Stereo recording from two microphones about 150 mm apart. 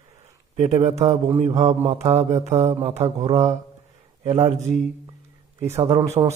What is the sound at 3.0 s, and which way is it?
Speech, 20° right (ahead or behind).